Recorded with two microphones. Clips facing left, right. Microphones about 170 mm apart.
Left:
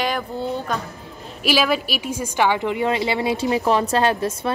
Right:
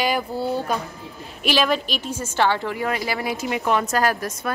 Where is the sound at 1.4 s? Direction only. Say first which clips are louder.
Left 1 dB; 5° left (ahead or behind); by 4.5 s 25° left (ahead or behind).